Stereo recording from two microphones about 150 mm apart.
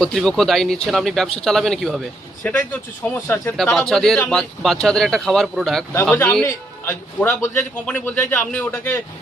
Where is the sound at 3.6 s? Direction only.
5° left (ahead or behind).